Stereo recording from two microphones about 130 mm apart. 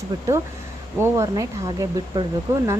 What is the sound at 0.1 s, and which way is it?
Speech, 35° right (ahead or behind).